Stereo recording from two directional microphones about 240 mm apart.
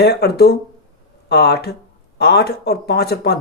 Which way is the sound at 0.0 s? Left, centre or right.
Left.